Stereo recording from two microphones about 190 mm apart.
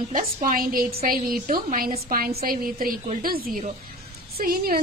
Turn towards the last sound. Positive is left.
turn(degrees=-50)  # may be behind; listen again after turning